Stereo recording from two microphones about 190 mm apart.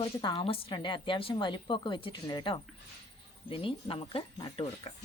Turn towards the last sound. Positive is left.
turn(degrees=30)  # may be behind; listen again after turning